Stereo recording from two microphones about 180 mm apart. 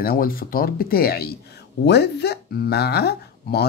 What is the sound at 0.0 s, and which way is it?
Speech, 55° left (ahead or behind).